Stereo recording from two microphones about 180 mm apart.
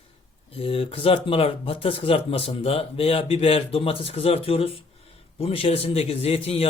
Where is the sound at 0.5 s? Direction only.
30° left (ahead or behind).